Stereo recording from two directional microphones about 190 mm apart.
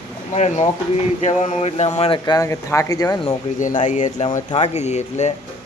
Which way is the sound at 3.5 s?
40° left (ahead or behind).